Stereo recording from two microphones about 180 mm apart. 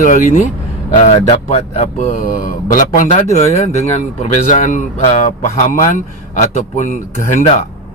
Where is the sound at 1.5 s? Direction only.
35° left (ahead or behind).